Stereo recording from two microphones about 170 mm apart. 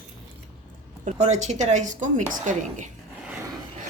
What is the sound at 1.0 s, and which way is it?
A woman's voice, 45° right (ahead or behind).